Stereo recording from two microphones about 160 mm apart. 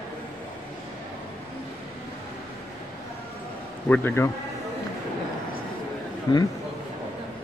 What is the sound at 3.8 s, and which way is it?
Speech, 10° left (ahead or behind).